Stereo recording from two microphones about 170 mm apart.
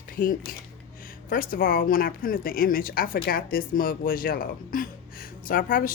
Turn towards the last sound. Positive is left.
turn(degrees=55)  # may be behind; listen again after turning